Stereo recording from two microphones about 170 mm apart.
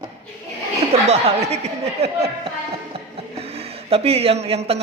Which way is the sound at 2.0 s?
75° right (ahead or behind).